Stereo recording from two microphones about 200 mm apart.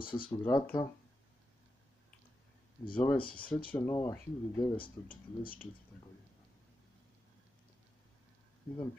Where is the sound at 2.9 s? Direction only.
20° left (ahead or behind).